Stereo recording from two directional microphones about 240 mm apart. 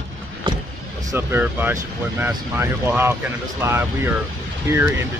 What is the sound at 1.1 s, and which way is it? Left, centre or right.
Speech, centre.